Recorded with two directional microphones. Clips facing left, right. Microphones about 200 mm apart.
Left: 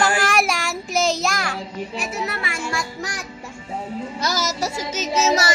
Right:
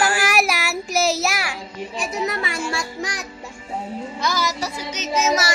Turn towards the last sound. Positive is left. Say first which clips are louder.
# left 1 dB
turn(degrees=30)  # may be behind; listen again after turning